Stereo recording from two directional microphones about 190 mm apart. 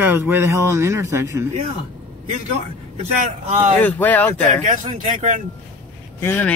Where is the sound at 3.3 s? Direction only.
35° right (ahead or behind).